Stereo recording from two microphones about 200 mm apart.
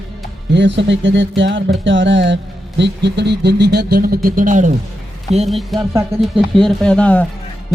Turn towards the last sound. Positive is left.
turn(degrees=5)  # may be behind; listen again after turning